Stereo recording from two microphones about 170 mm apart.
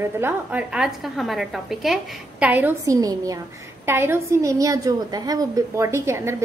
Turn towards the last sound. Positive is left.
turn(degrees=-15)  # may be behind; listen again after turning